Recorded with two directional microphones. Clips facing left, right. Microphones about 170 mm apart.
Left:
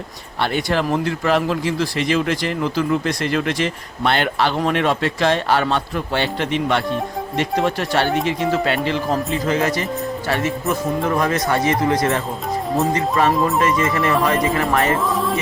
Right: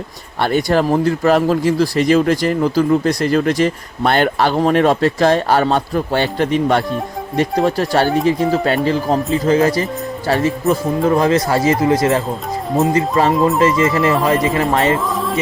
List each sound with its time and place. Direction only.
0.4 s a man's voice: 40° right (ahead or behind); by 14.9 s 20° right (ahead or behind)
15.1 s music: centre (ahead or behind)